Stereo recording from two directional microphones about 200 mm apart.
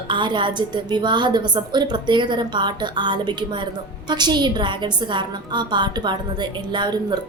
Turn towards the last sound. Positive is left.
turn(degrees=-20)  # may be behind; listen again after turning